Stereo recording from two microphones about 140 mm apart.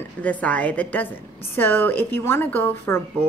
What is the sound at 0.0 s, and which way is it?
Speech, 10° left (ahead or behind).